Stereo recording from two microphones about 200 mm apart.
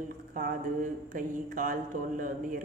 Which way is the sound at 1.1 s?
40° right (ahead or behind).